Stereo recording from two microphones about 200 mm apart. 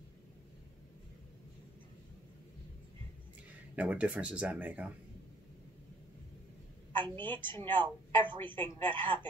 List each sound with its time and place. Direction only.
3.7 s speech: 5° right (ahead or behind)
6.9 s a woman's voice: 25° right (ahead or behind)
8.5 s speech: 10° left (ahead or behind)
8.9 s a woman's voice: 25° right (ahead or behind)